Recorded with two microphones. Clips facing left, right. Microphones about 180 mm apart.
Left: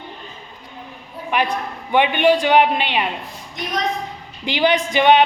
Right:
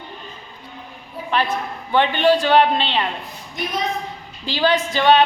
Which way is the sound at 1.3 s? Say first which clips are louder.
Left 1 dB; 15° left (ahead or behind).